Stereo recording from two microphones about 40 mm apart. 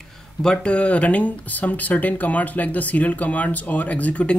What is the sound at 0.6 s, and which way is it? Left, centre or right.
Speech, left.